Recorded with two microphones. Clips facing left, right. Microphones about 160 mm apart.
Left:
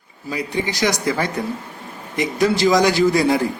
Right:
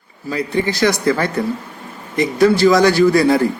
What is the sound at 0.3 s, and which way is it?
Speech, 15° left (ahead or behind).